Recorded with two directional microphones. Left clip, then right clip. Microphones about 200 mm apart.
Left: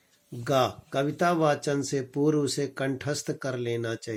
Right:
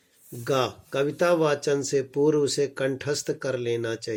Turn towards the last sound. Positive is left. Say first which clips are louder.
# right 3 dB
turn(degrees=45)  # may be behind; listen again after turning